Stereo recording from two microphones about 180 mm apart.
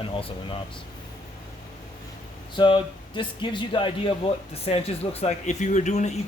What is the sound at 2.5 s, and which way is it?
Speech, 25° left (ahead or behind).